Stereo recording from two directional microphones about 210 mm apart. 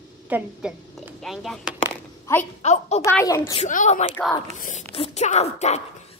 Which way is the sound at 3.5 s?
35° left (ahead or behind).